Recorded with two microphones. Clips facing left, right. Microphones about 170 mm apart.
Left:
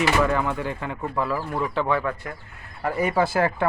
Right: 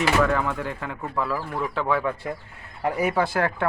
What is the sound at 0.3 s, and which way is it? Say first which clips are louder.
Speech: left 1 dB; centre (ahead or behind).